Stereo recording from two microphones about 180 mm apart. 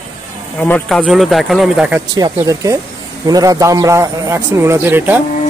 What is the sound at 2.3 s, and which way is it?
A man's voice, 20° right (ahead or behind).